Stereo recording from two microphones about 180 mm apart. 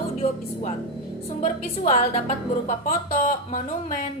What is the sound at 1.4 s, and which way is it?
A woman's voice, 35° left (ahead or behind).